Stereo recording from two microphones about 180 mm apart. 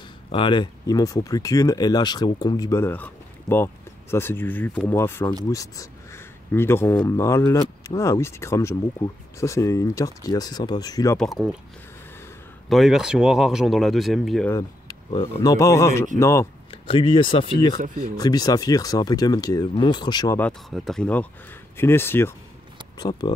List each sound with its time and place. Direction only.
0.3 s speech: 25° left (ahead or behind)
11.1 s speech: centre (ahead or behind)
12.6 s speech: centre (ahead or behind)
15.3 s speech: 15° left (ahead or behind)
16.7 s speech: 30° left (ahead or behind)
17.7 s speech: 50° right (ahead or behind)
18.1 s speech: 20° left (ahead or behind)
20.3 s speech: 5° left (ahead or behind)
22.9 s speech: 20° left (ahead or behind)